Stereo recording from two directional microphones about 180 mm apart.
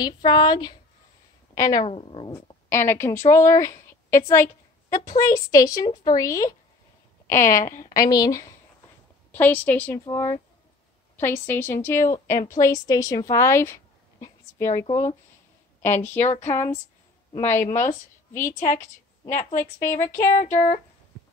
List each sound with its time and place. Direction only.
0.0 s a woman's voice: 25° left (ahead or behind)
1.9 s a woman's voice: 30° left (ahead or behind)
2.3 s a woman's voice: 15° left (ahead or behind)
7.6 s a woman's voice: 45° left (ahead or behind)
7.9 s a woman's voice: 20° left (ahead or behind)
9.3 s a woman's voice: 10° left (ahead or behind)
14.8 s a woman's voice: 15° left (ahead or behind)
15.8 s speech: 40° left (ahead or behind)
17.5 s a woman's voice: 10° left (ahead or behind)
19.2 s a woman's voice: 45° left (ahead or behind)